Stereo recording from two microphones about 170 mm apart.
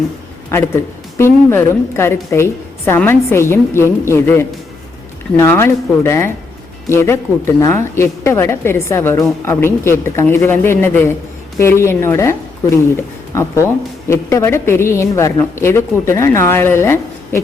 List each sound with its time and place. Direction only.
0.5 s a woman's voice: 15° left (ahead or behind)